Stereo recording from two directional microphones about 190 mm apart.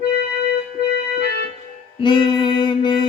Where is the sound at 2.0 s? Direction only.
25° left (ahead or behind).